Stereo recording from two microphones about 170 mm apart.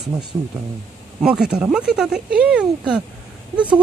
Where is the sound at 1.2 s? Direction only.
5° right (ahead or behind).